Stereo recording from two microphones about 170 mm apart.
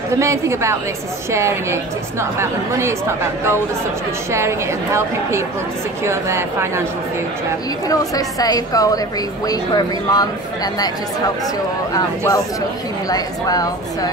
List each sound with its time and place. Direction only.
0.2 s a woman's voice: 15° right (ahead or behind)
4.3 s a woman's voice: 15° right (ahead or behind)
7.9 s speech: 20° left (ahead or behind)
11.9 s speech: 20° left (ahead or behind)